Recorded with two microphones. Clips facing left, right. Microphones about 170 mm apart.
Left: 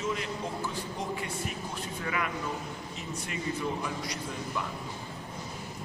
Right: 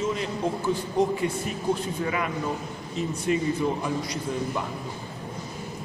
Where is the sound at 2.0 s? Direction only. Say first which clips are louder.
Right 3 dB; 25° right (ahead or behind).